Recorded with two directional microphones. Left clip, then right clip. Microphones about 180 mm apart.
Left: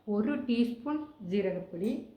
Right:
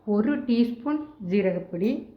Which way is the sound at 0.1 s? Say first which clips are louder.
Right 7 dB; 15° right (ahead or behind).